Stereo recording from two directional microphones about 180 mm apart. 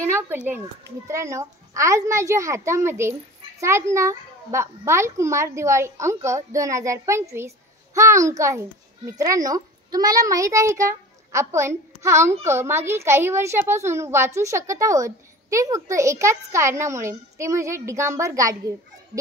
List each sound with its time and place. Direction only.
0.0 s a child's voice: 15° right (ahead or behind)